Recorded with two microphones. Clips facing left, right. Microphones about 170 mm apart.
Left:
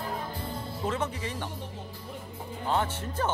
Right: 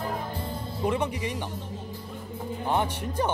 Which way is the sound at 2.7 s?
15° right (ahead or behind).